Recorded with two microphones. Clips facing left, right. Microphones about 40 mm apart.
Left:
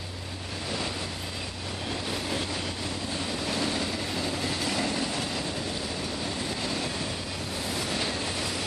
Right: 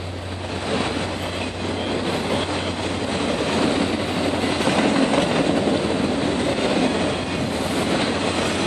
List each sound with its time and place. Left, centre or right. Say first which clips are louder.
3.2 s train: right 10 dB; right